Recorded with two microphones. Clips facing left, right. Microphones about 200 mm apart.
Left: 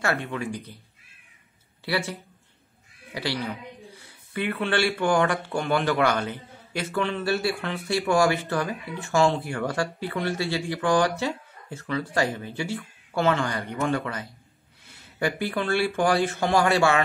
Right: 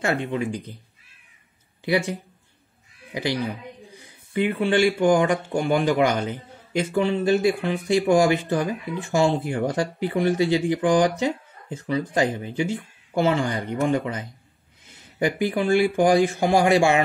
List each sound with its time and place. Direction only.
0.0 s speech: 20° right (ahead or behind)
1.9 s speech: 15° right (ahead or behind)
3.2 s speech: 15° right (ahead or behind)